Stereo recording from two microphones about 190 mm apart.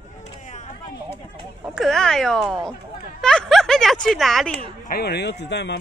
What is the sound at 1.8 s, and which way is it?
A woman's voice, centre (ahead or behind).